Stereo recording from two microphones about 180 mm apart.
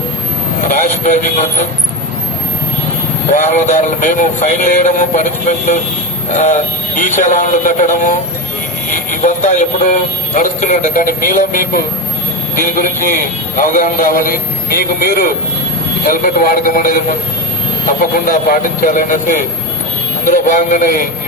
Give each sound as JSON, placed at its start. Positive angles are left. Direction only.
{"t": 0.7, "sound": "speech", "side_deg": 45}
{"t": 3.3, "sound": "speech", "side_deg": 45}
{"t": 18.3, "sound": "speech", "side_deg": 50}